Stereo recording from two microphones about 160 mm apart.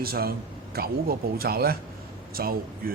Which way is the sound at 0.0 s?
70° right (ahead or behind).